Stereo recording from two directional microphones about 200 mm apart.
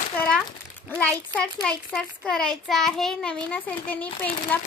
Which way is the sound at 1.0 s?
5° left (ahead or behind).